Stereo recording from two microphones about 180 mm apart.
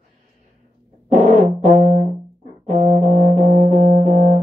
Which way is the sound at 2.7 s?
40° right (ahead or behind).